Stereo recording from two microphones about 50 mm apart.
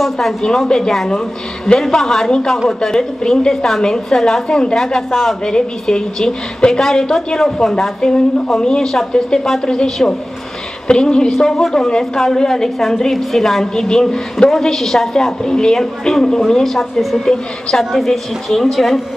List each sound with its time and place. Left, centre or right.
0.4 s a woman's voice: centre
11.3 s a woman's voice: centre